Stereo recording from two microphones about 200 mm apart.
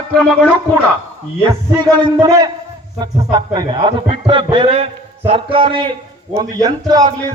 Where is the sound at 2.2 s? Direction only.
20° right (ahead or behind).